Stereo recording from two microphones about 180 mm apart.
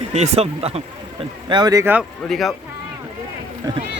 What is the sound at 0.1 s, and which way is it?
Speech, 35° right (ahead or behind).